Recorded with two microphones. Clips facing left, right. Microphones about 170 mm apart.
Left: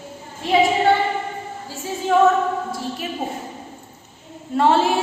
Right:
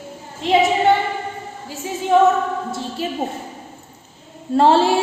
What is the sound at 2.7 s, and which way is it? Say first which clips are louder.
Speech: right 2 dB; 25° right (ahead or behind).